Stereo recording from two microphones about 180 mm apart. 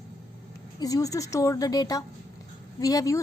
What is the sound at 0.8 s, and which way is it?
A woman's voice, 20° left (ahead or behind).